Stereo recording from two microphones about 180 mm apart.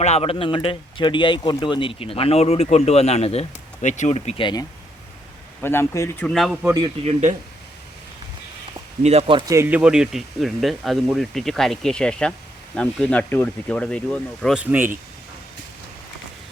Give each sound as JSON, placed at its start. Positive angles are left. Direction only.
{"t": 0.0, "sound": "speech", "side_deg": 35}
{"t": 5.6, "sound": "speech", "side_deg": 15}
{"t": 7.0, "sound": "speech", "side_deg": -40}
{"t": 9.0, "sound": "speech", "side_deg": -35}
{"t": 9.5, "sound": "speech", "side_deg": -10}
{"t": 14.5, "sound": "speech", "side_deg": -10}